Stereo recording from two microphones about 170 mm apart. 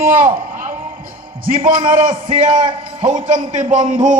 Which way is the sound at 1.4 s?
55° right (ahead or behind).